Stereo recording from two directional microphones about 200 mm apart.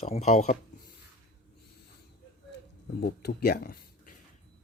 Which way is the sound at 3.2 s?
55° left (ahead or behind).